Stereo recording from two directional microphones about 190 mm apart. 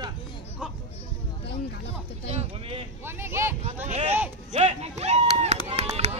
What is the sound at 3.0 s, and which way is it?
Vehicle, 15° right (ahead or behind).